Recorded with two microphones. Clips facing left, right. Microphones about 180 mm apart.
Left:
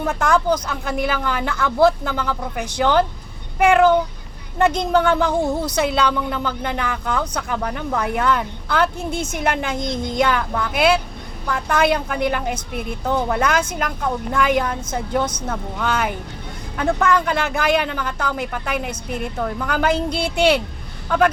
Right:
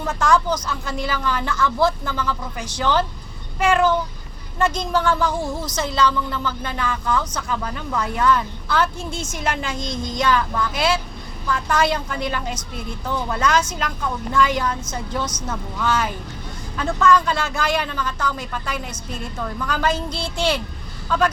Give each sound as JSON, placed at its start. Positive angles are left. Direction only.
{"t": 0.0, "sound": "speech", "side_deg": 60}